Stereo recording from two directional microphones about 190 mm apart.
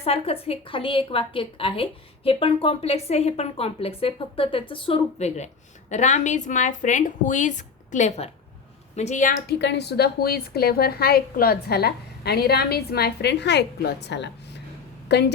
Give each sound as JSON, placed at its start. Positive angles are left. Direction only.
{"t": 0.0, "sound": "a woman's voice", "side_deg": 30}
{"t": 9.6, "sound": "a woman's voice", "side_deg": 60}